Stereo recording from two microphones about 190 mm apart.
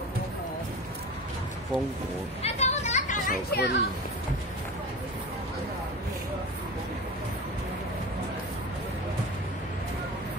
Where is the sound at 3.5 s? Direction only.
60° left (ahead or behind).